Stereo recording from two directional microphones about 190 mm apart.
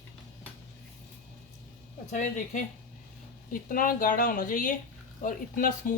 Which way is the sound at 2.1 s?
40° left (ahead or behind).